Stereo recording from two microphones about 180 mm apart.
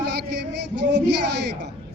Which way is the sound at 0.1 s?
70° right (ahead or behind).